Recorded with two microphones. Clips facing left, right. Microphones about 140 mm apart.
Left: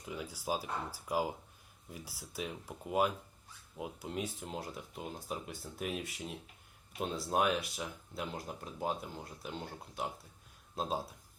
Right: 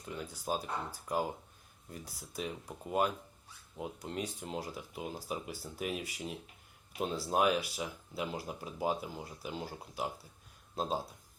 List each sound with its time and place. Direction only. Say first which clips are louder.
0.0 s speech: even; 5° left (ahead or behind)